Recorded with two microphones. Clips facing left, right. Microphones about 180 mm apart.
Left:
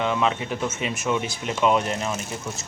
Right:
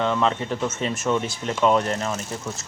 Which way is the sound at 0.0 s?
10° left (ahead or behind).